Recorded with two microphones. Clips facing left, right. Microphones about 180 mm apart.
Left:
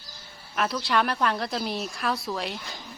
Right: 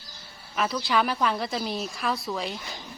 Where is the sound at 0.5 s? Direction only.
Centre (ahead or behind).